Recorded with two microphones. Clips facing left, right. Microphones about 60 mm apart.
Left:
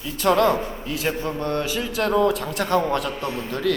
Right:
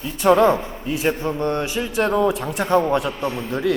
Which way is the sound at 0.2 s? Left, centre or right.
Centre.